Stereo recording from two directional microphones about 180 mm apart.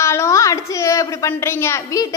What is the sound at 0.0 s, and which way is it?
A woman's voice, 15° left (ahead or behind).